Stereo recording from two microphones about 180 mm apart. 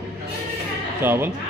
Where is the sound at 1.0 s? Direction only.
10° right (ahead or behind).